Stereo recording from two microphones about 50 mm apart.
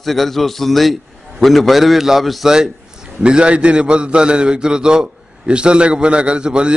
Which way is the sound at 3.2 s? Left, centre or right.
Centre.